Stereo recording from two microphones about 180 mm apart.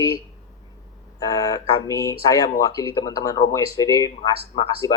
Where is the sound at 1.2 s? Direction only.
20° left (ahead or behind).